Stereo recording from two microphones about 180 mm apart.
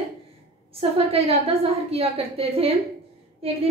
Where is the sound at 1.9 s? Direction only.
30° right (ahead or behind).